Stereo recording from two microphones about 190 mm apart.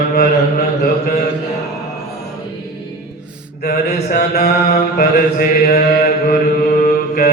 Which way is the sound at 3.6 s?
45° left (ahead or behind).